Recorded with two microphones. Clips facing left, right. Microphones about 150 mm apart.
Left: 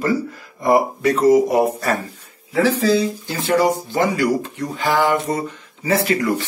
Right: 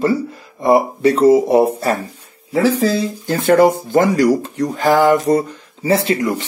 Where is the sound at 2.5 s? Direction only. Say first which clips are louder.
Right 1 dB; 40° right (ahead or behind).